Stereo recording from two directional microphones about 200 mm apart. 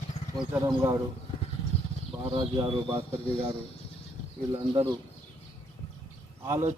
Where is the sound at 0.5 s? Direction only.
10° right (ahead or behind).